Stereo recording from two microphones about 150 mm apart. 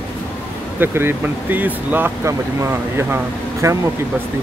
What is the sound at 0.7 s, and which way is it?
Speech, 15° right (ahead or behind).